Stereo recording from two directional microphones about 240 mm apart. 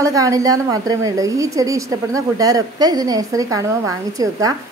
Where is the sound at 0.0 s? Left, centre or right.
Centre.